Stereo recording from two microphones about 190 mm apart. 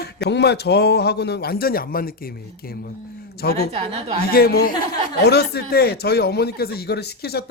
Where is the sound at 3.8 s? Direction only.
30° right (ahead or behind).